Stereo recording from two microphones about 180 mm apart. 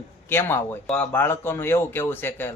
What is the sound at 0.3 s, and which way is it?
Speech, 10° left (ahead or behind).